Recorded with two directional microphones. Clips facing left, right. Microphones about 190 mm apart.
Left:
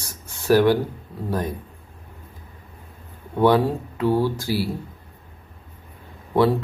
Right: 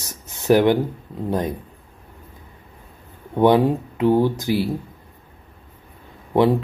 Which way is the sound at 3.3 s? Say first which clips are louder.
Right 2 dB; 20° right (ahead or behind).